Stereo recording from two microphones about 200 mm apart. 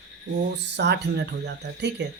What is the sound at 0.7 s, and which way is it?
Speech, 60° right (ahead or behind).